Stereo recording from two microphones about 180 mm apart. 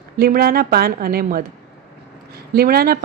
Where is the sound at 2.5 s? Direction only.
55° right (ahead or behind).